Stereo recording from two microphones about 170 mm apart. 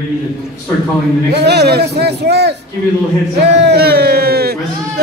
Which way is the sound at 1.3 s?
75° right (ahead or behind).